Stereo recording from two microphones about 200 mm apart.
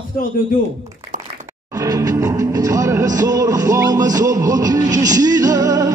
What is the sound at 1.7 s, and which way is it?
Music, 15° right (ahead or behind).